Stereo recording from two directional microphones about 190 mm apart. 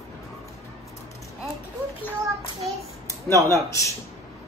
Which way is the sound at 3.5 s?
15° left (ahead or behind).